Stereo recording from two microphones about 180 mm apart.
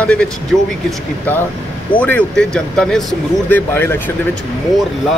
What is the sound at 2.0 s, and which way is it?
Speech, 10° left (ahead or behind).